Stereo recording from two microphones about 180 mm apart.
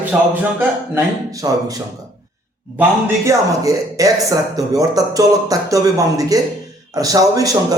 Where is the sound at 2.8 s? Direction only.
15° right (ahead or behind).